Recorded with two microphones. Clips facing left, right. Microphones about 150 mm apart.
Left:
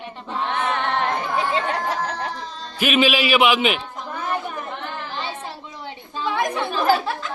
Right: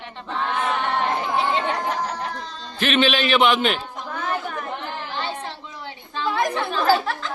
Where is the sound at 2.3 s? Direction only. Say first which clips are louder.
Left 1 dB; centre (ahead or behind).